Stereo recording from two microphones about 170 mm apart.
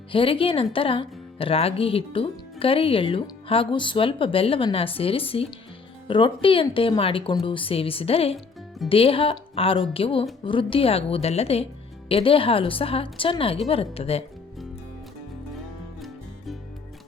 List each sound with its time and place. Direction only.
0.1 s speech: 30° left (ahead or behind)
16.0 s music: centre (ahead or behind)